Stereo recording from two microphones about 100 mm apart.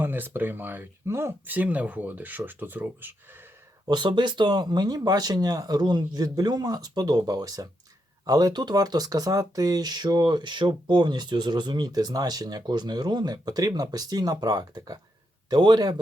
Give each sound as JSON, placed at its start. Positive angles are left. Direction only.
{"t": 0.0, "sound": "speech", "side_deg": -20}
{"t": 1.5, "sound": "speech", "side_deg": -15}
{"t": 3.8, "sound": "a man's voice", "side_deg": -50}